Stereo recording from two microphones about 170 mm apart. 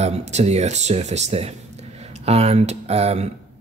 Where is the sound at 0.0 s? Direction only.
40° right (ahead or behind).